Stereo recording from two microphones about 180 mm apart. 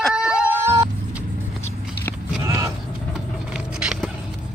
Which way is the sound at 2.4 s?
20° right (ahead or behind).